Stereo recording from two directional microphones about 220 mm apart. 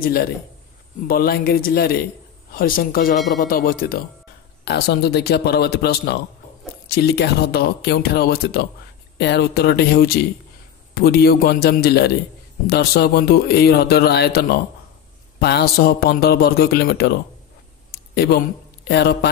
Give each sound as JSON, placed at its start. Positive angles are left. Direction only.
{"t": 0.0, "sound": "speech", "side_deg": 45}
{"t": 17.9, "sound": "a sound", "side_deg": 45}
{"t": 18.9, "sound": "speech", "side_deg": 45}